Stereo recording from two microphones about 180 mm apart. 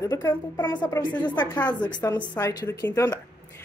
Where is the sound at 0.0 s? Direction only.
15° left (ahead or behind).